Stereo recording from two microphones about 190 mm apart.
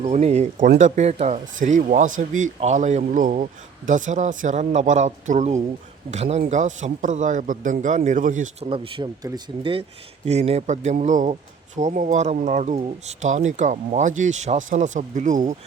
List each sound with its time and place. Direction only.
0.0 s speech: 35° right (ahead or behind)
8.7 s speech: 25° right (ahead or behind); by 15.5 s 40° right (ahead or behind)